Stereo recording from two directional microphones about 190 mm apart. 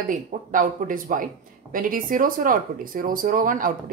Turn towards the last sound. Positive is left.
turn(degrees=-45)  # may be behind; listen again after turning